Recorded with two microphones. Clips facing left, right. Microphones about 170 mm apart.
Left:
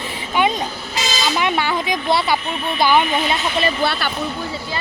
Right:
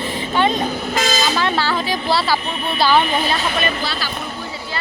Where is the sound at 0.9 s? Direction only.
50° right (ahead or behind).